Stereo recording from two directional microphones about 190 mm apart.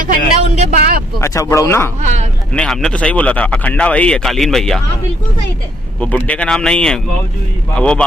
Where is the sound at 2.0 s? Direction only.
35° right (ahead or behind).